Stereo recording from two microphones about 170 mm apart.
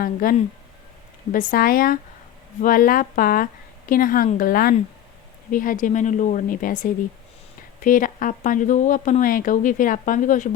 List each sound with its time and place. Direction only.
0.0 s a woman's voice: 55° left (ahead or behind)